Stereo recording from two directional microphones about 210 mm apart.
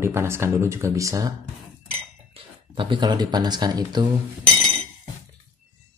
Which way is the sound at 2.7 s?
20° right (ahead or behind).